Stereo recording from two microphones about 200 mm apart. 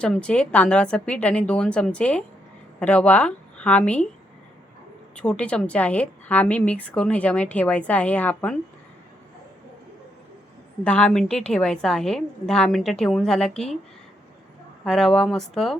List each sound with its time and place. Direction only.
0.0 s a woman's voice: 5° left (ahead or behind)
5.1 s a woman's voice: 5° left (ahead or behind)
10.8 s a woman's voice: 5° left (ahead or behind)
14.8 s a woman's voice: centre (ahead or behind)